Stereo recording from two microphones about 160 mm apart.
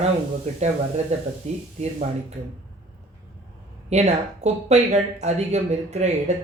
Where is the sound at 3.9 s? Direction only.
45° right (ahead or behind).